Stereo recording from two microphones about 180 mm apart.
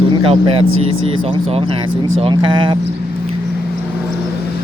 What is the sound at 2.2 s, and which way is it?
Speech, 25° right (ahead or behind).